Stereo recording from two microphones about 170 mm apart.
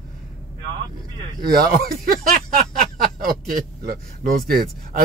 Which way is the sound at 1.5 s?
60° right (ahead or behind).